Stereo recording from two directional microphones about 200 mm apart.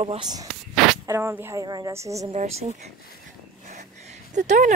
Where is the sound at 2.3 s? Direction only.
30° right (ahead or behind).